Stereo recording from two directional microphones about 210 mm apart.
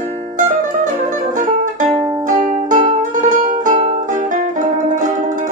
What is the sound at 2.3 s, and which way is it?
Music, 40° right (ahead or behind).